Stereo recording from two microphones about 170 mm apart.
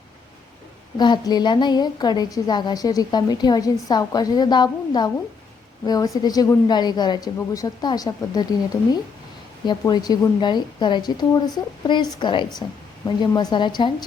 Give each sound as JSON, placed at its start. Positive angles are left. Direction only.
{"t": 0.9, "sound": "a woman's voice", "side_deg": 25}